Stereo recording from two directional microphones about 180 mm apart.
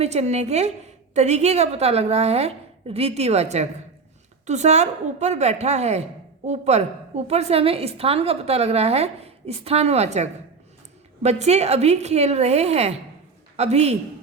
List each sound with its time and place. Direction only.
0.0 s a woman's voice: 35° right (ahead or behind)